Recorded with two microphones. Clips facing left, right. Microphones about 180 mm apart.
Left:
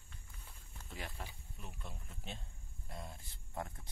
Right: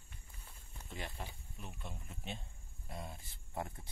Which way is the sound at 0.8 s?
20° right (ahead or behind).